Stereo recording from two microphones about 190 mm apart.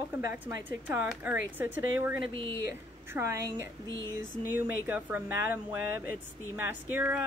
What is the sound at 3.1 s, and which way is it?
Speech, 15° right (ahead or behind).